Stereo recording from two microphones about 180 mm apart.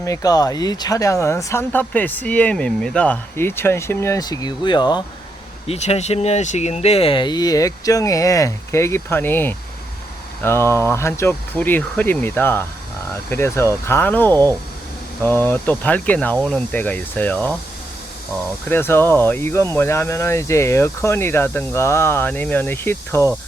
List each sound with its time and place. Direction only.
0.0 s speech: 20° left (ahead or behind)
5.6 s speech: 35° left (ahead or behind); by 17.6 s 10° left (ahead or behind)
18.7 s speech: 10° left (ahead or behind)